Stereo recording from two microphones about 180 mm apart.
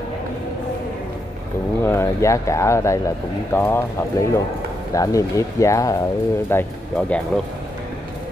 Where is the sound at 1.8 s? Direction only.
15° left (ahead or behind).